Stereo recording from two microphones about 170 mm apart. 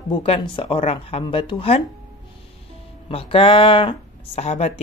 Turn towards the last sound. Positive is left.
turn(degrees=40)  # may be behind; listen again after turning